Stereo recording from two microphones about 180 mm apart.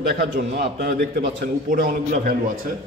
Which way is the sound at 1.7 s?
50° right (ahead or behind).